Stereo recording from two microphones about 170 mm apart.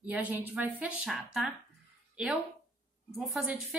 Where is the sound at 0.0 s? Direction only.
10° right (ahead or behind).